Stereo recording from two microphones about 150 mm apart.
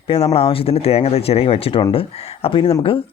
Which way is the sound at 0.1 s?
40° left (ahead or behind).